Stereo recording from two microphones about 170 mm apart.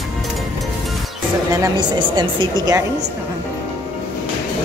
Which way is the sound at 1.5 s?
25° right (ahead or behind).